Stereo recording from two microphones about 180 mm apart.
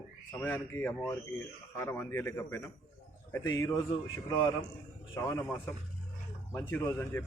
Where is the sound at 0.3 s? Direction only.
10° left (ahead or behind).